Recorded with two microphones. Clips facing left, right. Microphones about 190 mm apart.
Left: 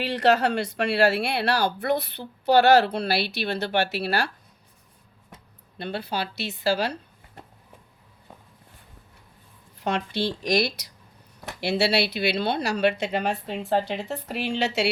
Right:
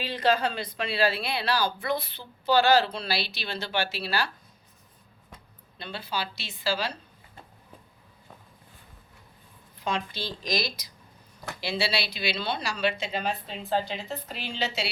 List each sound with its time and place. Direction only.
0.0 s speech: 75° left (ahead or behind)
5.7 s speech: 60° left (ahead or behind)
9.8 s speech: 65° left (ahead or behind)